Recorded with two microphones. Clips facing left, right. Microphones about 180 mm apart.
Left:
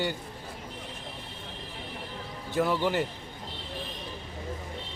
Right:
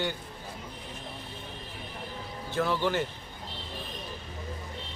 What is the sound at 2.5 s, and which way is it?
Speech, 15° left (ahead or behind).